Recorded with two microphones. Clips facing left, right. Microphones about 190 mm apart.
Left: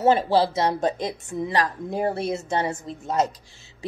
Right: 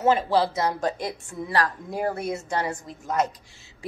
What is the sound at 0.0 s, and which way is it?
Speech, 35° left (ahead or behind).